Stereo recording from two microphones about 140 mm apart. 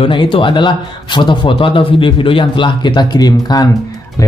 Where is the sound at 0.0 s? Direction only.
35° left (ahead or behind).